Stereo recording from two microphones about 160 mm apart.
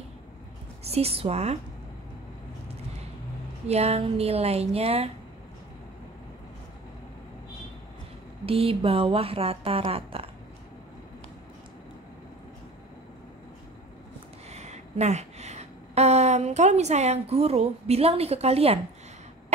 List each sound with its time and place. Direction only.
0.8 s speech: 40° right (ahead or behind)
3.6 s speech: 40° right (ahead or behind)
8.5 s speech: 35° right (ahead or behind)
14.5 s speech: 45° right (ahead or behind)